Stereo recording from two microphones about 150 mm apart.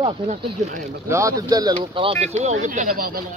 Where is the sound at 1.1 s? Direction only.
20° right (ahead or behind).